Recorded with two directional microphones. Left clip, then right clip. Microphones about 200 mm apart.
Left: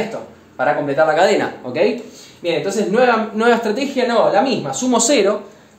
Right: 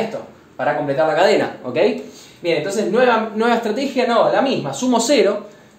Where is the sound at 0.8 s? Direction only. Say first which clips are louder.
Even; 20° left (ahead or behind).